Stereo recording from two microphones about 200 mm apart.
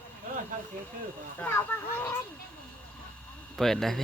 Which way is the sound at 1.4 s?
10° left (ahead or behind).